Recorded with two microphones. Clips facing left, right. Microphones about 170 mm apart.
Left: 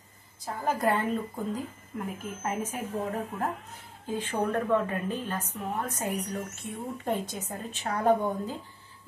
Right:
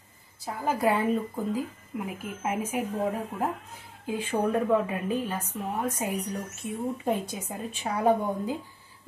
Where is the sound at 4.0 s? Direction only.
10° right (ahead or behind).